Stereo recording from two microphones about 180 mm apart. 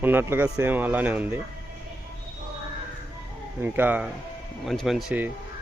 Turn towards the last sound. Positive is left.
turn(degrees=-5)  # may be behind; listen again after turning